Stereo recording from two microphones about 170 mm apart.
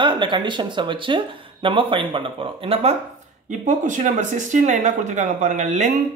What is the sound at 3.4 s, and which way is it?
Speech, 50° right (ahead or behind).